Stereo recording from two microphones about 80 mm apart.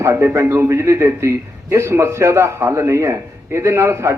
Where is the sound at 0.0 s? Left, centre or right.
Right.